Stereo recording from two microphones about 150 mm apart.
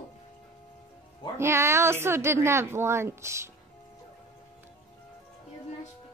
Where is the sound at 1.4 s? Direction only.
15° right (ahead or behind).